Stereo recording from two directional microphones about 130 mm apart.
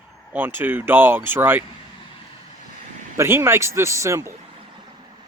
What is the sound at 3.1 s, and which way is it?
Speech, 20° right (ahead or behind).